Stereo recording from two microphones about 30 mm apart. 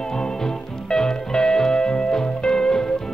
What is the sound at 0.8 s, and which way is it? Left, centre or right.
Music, left.